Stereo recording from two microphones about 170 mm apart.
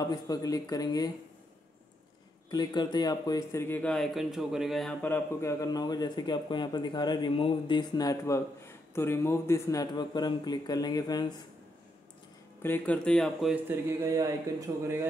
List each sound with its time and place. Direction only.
0.0 s speech: 20° left (ahead or behind)
2.5 s speech: 25° left (ahead or behind); by 5.1 s centre (ahead or behind)
5.1 s speech: 15° left (ahead or behind)
12.6 s speech: 10° left (ahead or behind)
13.7 s a man's voice: 15° right (ahead or behind)